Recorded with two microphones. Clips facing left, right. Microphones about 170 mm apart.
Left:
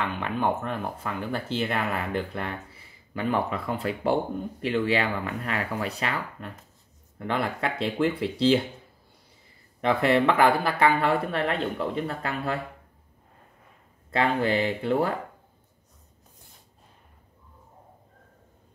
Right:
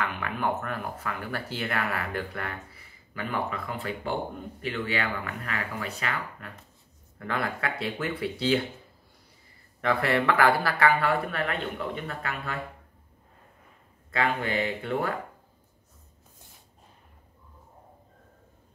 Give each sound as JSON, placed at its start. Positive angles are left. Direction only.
{"t": 0.0, "sound": "speech", "side_deg": 25}
{"t": 9.8, "sound": "speech", "side_deg": 20}
{"t": 14.1, "sound": "speech", "side_deg": 30}